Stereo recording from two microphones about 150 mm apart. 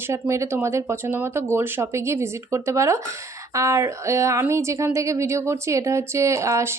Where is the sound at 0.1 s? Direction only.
20° right (ahead or behind).